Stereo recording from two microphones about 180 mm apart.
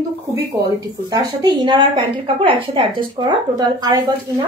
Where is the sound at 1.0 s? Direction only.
25° right (ahead or behind).